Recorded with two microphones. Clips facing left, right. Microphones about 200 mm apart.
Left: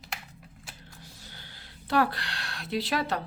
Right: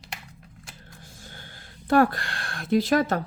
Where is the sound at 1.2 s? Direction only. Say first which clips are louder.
Right 4 dB; 50° right (ahead or behind).